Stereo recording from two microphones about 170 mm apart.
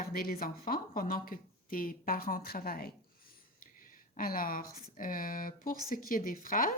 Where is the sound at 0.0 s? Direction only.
60° left (ahead or behind).